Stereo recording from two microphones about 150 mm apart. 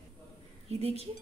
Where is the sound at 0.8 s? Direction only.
45° right (ahead or behind).